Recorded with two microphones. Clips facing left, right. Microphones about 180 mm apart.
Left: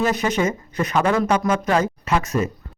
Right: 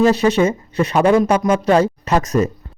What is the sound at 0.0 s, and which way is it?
Speech, 30° right (ahead or behind).